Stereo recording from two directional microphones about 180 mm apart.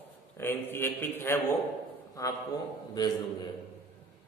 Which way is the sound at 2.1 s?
20° left (ahead or behind).